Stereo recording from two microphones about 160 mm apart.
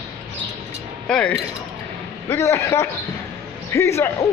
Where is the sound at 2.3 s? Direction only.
15° left (ahead or behind).